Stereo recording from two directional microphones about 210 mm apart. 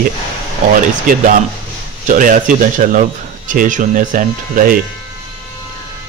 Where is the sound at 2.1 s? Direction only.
40° right (ahead or behind).